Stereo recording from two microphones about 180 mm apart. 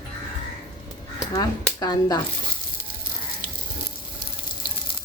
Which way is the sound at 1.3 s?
20° left (ahead or behind).